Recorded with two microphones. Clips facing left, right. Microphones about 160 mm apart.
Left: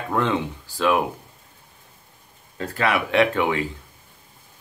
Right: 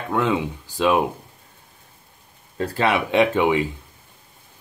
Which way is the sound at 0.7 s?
20° right (ahead or behind).